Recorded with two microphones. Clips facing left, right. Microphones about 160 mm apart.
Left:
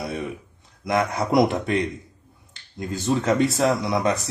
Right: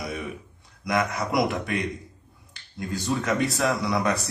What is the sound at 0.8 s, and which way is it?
Speech, 30° left (ahead or behind).